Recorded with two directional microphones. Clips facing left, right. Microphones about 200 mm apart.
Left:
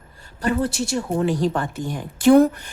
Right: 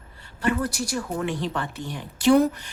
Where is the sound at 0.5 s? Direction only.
25° left (ahead or behind).